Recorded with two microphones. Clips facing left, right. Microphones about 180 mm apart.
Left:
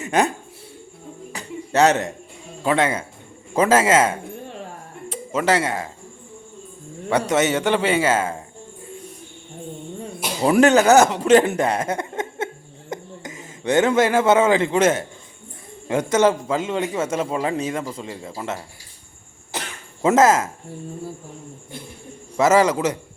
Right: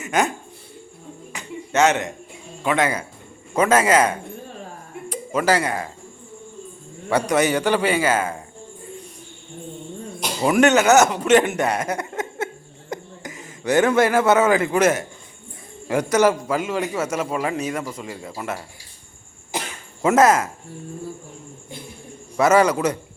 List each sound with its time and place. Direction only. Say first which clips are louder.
0.0 s speech: left 2 dB; 35° left (ahead or behind)
1.3 s a sound: left 1 dB; 35° left (ahead or behind)
2.6 s a man's voice: left 1 dB; 30° left (ahead or behind)
7.1 s a man's voice: even; 20° left (ahead or behind)
10.4 s a man's voice: left 1 dB; 30° left (ahead or behind)
20.0 s a man's voice: even; 25° left (ahead or behind)
22.4 s a man's voice: even; 25° left (ahead or behind)